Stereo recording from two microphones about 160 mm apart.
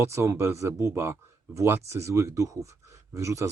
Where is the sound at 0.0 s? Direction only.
15° right (ahead or behind).